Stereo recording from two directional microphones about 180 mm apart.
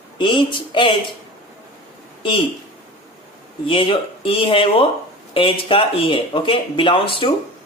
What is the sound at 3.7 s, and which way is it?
Speech, 30° left (ahead or behind).